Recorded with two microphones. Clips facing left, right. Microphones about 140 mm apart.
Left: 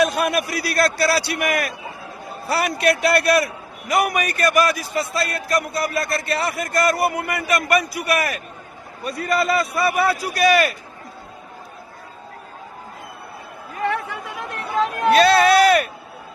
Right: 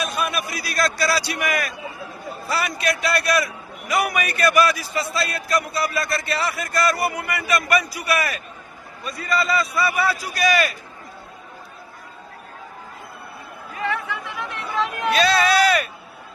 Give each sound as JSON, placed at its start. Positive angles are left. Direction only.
{"t": 0.0, "sound": "a man's voice", "side_deg": 80}
{"t": 9.0, "sound": "a man's voice", "side_deg": 60}
{"t": 13.8, "sound": "chatter", "side_deg": 45}
{"t": 14.6, "sound": "speech", "side_deg": 35}